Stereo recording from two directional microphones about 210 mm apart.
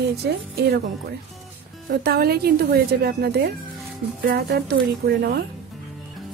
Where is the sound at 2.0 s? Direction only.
50° right (ahead or behind).